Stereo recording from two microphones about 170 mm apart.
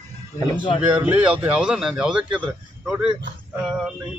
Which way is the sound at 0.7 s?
10° right (ahead or behind).